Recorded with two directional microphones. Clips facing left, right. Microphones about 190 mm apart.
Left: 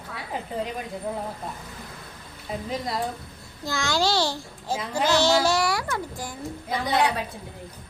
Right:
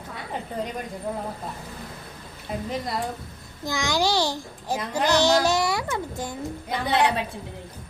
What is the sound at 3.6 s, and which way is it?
A child's voice, 15° right (ahead or behind).